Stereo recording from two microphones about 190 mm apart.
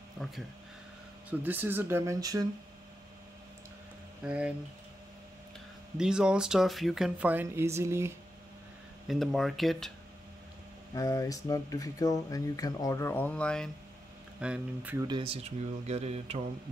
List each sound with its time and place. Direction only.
1.4 s speech: 10° right (ahead or behind)
4.2 s speech: 5° right (ahead or behind)
5.9 s speech: 5° right (ahead or behind)
9.0 s speech: centre (ahead or behind)
11.0 s speech: 15° left (ahead or behind)
14.4 s speech: 5° right (ahead or behind)
15.0 s speech: 25° right (ahead or behind)
15.9 s mantra: 35° right (ahead or behind)